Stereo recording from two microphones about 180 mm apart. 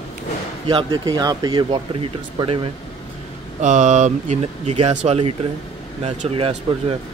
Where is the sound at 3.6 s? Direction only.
40° right (ahead or behind).